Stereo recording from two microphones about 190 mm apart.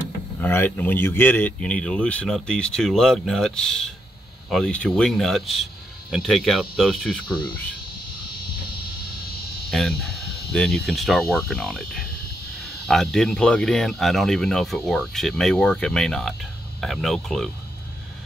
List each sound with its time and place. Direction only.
0.4 s speech: 10° left (ahead or behind)
7.2 s cricket: 25° left (ahead or behind)
9.7 s speech: centre (ahead or behind)